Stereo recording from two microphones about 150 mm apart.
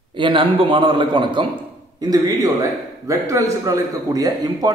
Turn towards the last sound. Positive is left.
turn(degrees=-25)  # may be behind; listen again after turning